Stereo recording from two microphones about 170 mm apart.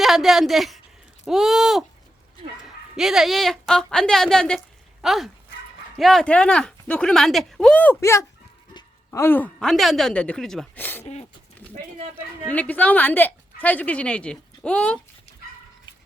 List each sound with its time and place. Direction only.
0.0 s a woman's voice: centre (ahead or behind)
2.9 s speech: 5° right (ahead or behind)
11.0 s speech: 40° left (ahead or behind)
12.5 s a woman's voice: 10° left (ahead or behind)